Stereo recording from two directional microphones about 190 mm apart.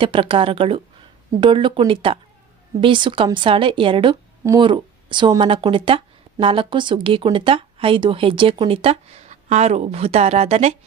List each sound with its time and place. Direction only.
0.0 s speech: 25° right (ahead or behind)